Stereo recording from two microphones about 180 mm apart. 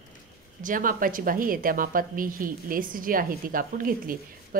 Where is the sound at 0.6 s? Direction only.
50° right (ahead or behind).